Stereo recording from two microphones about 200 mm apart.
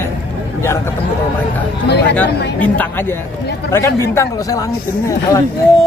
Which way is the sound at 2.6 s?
10° left (ahead or behind).